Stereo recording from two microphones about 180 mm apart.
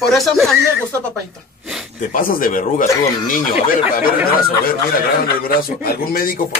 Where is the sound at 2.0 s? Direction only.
50° left (ahead or behind).